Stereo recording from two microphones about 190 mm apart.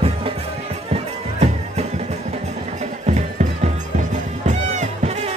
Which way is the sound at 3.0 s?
40° right (ahead or behind).